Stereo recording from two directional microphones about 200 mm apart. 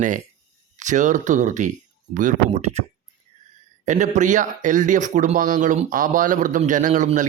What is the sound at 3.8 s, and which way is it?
A man's voice, 35° right (ahead or behind).